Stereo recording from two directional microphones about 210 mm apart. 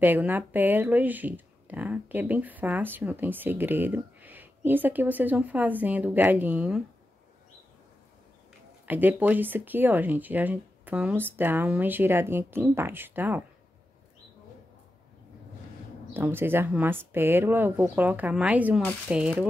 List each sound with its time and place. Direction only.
0.0 s speech: 10° right (ahead or behind)
8.8 s speech: 10° right (ahead or behind)
16.1 s speech: 10° right (ahead or behind)